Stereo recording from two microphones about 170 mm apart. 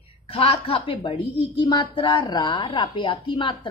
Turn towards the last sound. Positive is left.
turn(degrees=30)  # may be behind; listen again after turning